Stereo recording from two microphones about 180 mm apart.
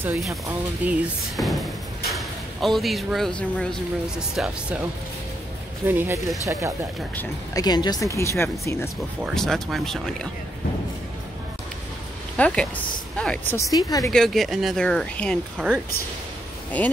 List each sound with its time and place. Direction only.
0.2 s speech: 5° right (ahead or behind)
5.9 s speech: 10° right (ahead or behind)
7.2 s speech: 20° left (ahead or behind)
9.2 s speech: centre (ahead or behind)
12.4 s speech: 5° left (ahead or behind)
13.6 s speech: 20° left (ahead or behind)
14.1 s speech: centre (ahead or behind)
16.8 s speech: 10° left (ahead or behind)